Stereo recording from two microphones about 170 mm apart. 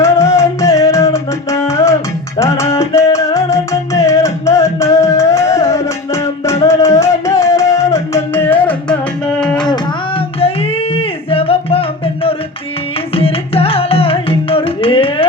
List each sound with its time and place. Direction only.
0.0 s music: 15° left (ahead or behind)
10.9 s music: 35° left (ahead or behind)